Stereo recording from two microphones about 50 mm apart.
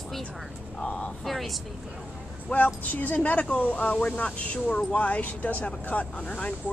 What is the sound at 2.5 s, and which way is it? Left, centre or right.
Speech, left.